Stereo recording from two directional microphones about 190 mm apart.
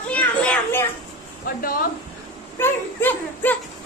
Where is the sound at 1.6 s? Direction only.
50° left (ahead or behind).